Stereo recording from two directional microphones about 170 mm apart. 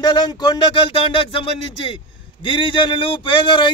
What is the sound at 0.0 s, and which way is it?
Speech, 25° left (ahead or behind).